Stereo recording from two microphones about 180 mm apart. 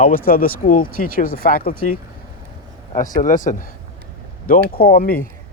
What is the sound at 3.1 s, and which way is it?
Speech, 45° left (ahead or behind).